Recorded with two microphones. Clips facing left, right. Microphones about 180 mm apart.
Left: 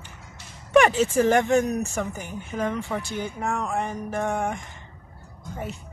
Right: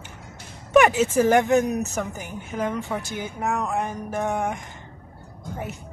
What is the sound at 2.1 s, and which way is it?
A woman's voice, 20° right (ahead or behind).